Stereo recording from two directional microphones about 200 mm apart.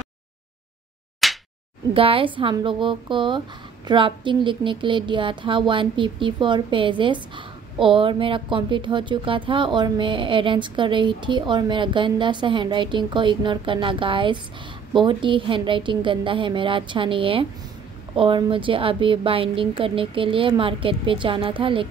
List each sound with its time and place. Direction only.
1.2 s slap: centre (ahead or behind)
2.0 s a woman's voice: 25° right (ahead or behind)